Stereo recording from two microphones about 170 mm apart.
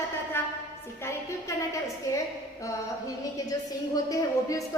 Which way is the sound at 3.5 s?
20° left (ahead or behind).